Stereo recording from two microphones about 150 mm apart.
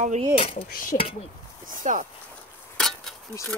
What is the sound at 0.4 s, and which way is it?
Speech, 40° left (ahead or behind).